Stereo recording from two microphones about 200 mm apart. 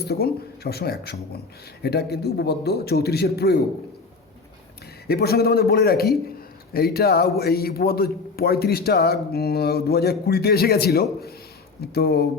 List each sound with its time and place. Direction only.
0.0 s a man's voice: 50° left (ahead or behind)
5.0 s a man's voice: 50° left (ahead or behind)